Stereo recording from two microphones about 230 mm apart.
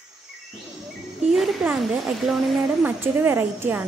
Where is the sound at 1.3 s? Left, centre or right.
Centre.